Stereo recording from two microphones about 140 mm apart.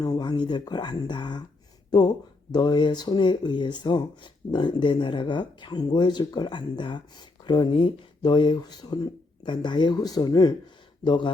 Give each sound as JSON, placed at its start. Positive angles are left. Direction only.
{"t": 0.0, "sound": "speech", "side_deg": 30}